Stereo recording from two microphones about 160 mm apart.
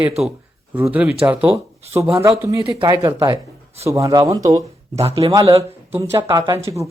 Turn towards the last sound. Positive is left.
turn(degrees=-20)  # may be behind; listen again after turning